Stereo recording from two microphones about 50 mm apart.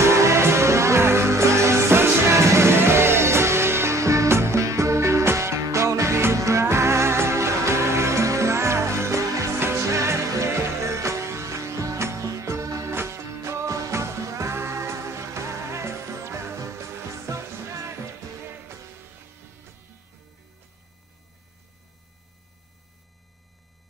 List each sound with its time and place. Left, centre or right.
0.0 s music: right